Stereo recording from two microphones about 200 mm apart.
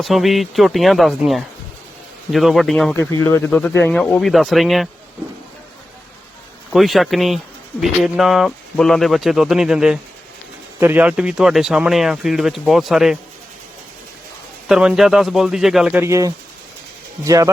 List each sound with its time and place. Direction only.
0.0 s speech: centre (ahead or behind)
6.7 s speech: centre (ahead or behind)
14.7 s speech: 5° right (ahead or behind)